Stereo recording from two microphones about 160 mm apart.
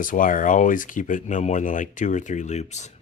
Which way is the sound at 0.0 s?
55° left (ahead or behind).